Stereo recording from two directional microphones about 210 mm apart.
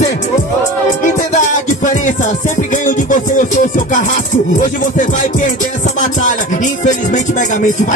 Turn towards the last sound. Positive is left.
turn(degrees=35)  # may be behind; listen again after turning